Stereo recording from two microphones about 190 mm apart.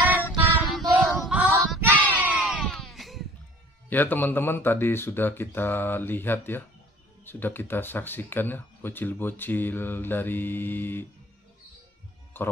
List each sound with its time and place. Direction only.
0.3 s child singing: centre (ahead or behind)
3.9 s speech: 10° left (ahead or behind)
12.4 s speech: 10° left (ahead or behind)